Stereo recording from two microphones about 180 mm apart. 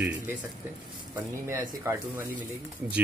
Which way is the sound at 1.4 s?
15° right (ahead or behind).